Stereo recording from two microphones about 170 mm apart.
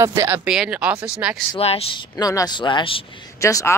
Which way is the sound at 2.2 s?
20° left (ahead or behind).